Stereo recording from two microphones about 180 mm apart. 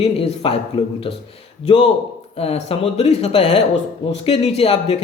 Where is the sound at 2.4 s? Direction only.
35° left (ahead or behind).